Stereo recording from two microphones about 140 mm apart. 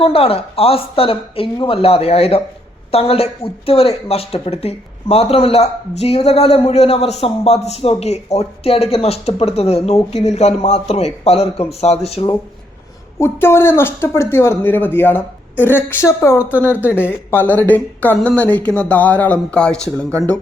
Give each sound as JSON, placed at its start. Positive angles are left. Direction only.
{"t": 0.0, "sound": "speech", "side_deg": 45}
{"t": 13.1, "sound": "speech", "side_deg": 20}